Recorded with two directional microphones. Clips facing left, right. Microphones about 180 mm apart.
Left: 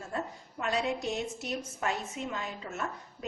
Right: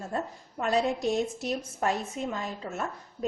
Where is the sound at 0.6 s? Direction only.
40° right (ahead or behind).